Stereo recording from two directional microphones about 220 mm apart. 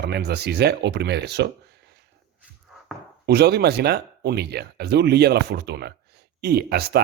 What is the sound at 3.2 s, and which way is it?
Speech, 45° right (ahead or behind).